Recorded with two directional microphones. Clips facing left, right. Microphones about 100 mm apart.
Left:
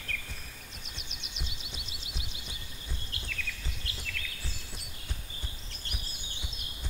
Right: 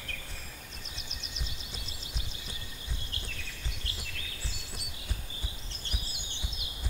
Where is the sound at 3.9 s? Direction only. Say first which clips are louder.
Left 2 dB; 35° right (ahead or behind).